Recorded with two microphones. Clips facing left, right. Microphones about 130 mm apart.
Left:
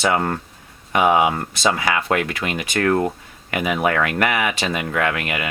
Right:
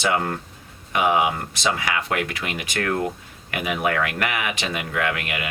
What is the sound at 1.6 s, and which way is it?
Speech, 45° left (ahead or behind).